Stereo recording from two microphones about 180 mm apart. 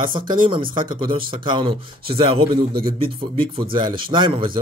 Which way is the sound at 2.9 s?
30° right (ahead or behind).